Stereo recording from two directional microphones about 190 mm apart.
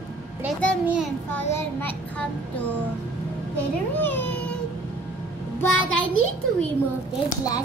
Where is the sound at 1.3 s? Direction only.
10° left (ahead or behind).